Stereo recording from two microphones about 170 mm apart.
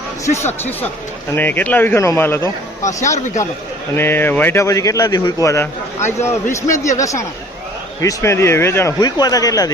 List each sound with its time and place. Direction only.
1.4 s a man's voice: 10° left (ahead or behind)
3.9 s a man's voice: 15° left (ahead or behind)
6.0 s speech: 45° left (ahead or behind)
6.2 s a man's voice: 15° left (ahead or behind)